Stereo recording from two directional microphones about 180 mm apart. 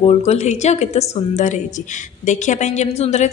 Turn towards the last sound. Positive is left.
turn(degrees=35)  # may be behind; listen again after turning